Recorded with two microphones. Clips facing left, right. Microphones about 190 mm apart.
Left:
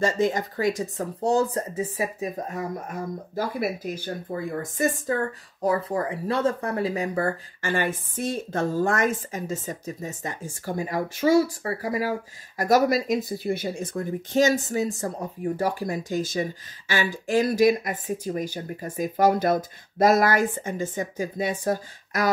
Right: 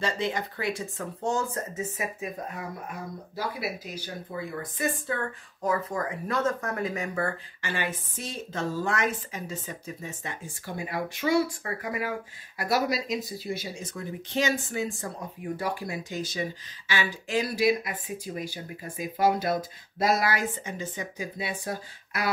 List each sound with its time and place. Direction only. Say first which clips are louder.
0.0 s speech: left 6 dB; 45° left (ahead or behind)